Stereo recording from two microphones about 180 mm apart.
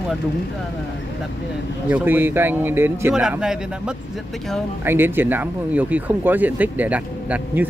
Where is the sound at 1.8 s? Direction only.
10° right (ahead or behind).